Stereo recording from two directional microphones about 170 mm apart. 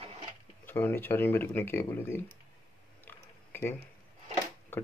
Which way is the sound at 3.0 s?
10° left (ahead or behind).